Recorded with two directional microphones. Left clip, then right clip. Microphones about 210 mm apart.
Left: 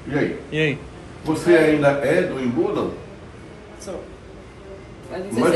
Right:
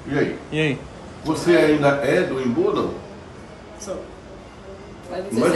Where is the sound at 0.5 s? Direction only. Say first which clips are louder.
Left 1 dB; 15° right (ahead or behind).